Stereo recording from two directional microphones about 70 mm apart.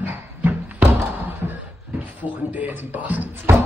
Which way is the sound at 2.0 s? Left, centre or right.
Right.